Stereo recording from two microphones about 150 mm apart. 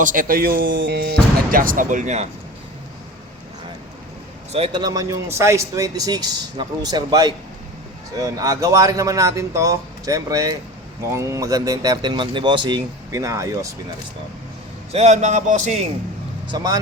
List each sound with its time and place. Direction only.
0.0 s speech: 65° right (ahead or behind); by 1.1 s 90° right
1.5 s speech: 70° right (ahead or behind)
4.5 s a man's voice: 40° right (ahead or behind)
4.8 s speech: 25° right (ahead or behind)
14.9 s a man's voice: 50° right (ahead or behind)
16.5 s speech: 25° right (ahead or behind)